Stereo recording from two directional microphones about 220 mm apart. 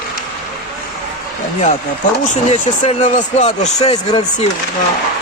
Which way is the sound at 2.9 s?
30° left (ahead or behind).